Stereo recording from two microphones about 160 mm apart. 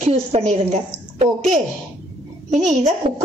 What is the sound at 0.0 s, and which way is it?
Speech, 40° right (ahead or behind).